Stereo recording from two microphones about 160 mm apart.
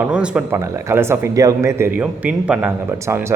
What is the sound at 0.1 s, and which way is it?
Speech, 5° right (ahead or behind).